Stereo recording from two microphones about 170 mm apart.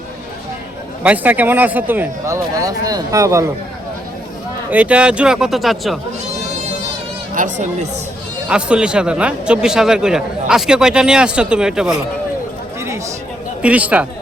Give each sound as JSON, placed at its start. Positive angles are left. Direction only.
{"t": 1.0, "sound": "speech", "side_deg": -10}
{"t": 4.7, "sound": "a man's voice", "side_deg": -10}
{"t": 7.4, "sound": "speech", "side_deg": -50}
{"t": 8.4, "sound": "a man's voice", "side_deg": -5}
{"t": 13.6, "sound": "speech", "side_deg": -5}